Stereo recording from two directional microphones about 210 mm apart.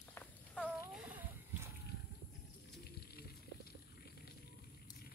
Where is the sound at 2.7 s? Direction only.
50° left (ahead or behind).